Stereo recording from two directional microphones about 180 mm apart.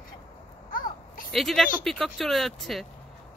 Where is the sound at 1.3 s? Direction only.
Centre (ahead or behind).